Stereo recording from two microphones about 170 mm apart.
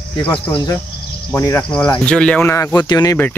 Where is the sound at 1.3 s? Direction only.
15° left (ahead or behind).